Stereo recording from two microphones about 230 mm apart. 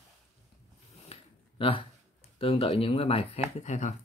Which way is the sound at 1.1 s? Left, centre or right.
Left.